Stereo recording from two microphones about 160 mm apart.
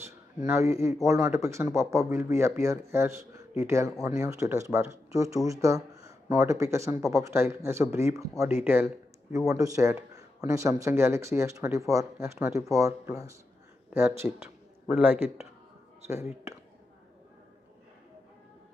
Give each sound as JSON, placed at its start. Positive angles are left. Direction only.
{"t": 0.0, "sound": "a man's voice", "side_deg": -15}